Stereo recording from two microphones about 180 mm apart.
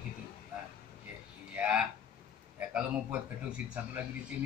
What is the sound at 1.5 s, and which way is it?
Speech, 5° right (ahead or behind).